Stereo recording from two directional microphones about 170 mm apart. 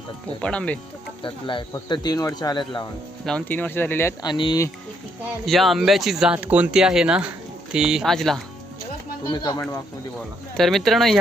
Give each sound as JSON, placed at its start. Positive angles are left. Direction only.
{"t": 0.4, "sound": "speech", "side_deg": 5}
{"t": 1.2, "sound": "speech", "side_deg": 30}
{"t": 3.2, "sound": "speech", "side_deg": 10}
{"t": 4.3, "sound": "speech", "side_deg": 25}
{"t": 5.5, "sound": "speech", "side_deg": 0}
{"t": 9.3, "sound": "speech", "side_deg": 20}
{"t": 10.6, "sound": "speech", "side_deg": 0}